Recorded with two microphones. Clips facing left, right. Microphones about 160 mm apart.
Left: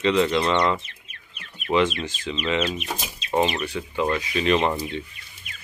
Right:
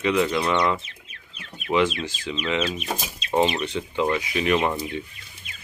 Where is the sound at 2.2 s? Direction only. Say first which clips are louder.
Left 1 dB; 10° right (ahead or behind).